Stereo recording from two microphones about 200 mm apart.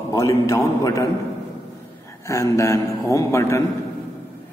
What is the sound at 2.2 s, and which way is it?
A man's voice, 15° left (ahead or behind).